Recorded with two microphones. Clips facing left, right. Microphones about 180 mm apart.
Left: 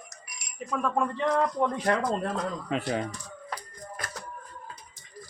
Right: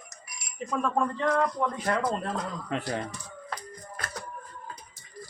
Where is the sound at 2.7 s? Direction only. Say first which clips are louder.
Left 2 dB; 15° left (ahead or behind).